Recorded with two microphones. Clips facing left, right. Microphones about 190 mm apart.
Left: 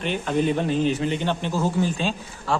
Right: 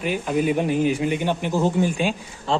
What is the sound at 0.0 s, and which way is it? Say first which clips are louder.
A man's voice: right 1 dB; 10° right (ahead or behind).